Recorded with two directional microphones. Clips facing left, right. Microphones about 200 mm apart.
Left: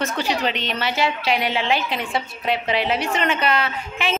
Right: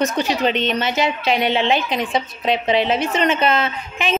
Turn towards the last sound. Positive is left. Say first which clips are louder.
# right 2 dB
turn(degrees=-20)  # may be behind; listen again after turning